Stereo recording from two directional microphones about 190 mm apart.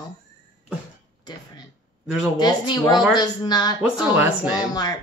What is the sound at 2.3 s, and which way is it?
Speech, 20° left (ahead or behind).